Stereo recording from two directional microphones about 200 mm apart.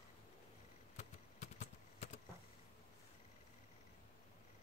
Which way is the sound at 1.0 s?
35° left (ahead or behind).